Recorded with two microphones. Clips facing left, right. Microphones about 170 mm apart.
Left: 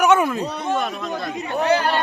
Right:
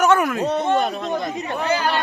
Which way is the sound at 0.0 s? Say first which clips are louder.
Even; 20° left (ahead or behind).